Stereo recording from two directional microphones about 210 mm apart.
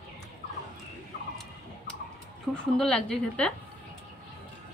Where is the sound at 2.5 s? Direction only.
5° left (ahead or behind).